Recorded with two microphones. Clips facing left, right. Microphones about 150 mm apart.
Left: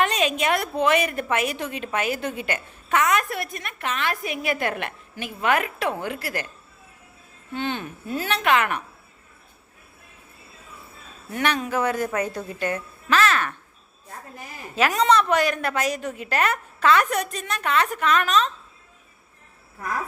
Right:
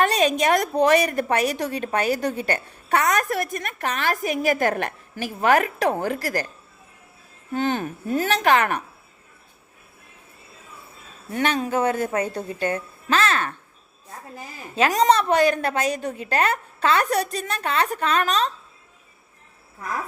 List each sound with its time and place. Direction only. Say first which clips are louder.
0.0 s a woman's voice: right 3 dB; 35° right (ahead or behind)
7.5 s a woman's voice: right 5 dB; 40° right (ahead or behind)
11.3 s a woman's voice: right 2 dB; 30° right (ahead or behind)